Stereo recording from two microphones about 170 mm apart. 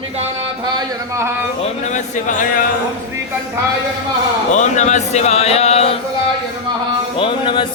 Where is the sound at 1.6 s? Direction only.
45° left (ahead or behind).